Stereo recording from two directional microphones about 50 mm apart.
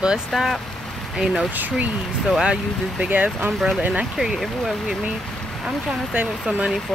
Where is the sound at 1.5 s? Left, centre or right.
Right.